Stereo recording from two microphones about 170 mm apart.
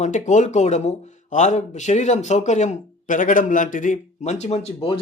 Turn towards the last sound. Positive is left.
turn(degrees=35)  # may be behind; listen again after turning